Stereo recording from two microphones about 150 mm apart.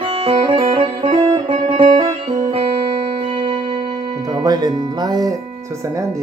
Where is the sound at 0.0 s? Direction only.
35° right (ahead or behind).